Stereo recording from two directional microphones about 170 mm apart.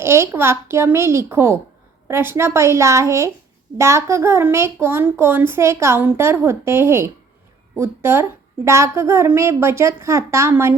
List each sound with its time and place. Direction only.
0.0 s a child's voice: 15° right (ahead or behind)